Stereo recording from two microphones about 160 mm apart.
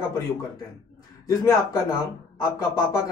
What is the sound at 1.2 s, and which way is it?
Speech, 25° left (ahead or behind).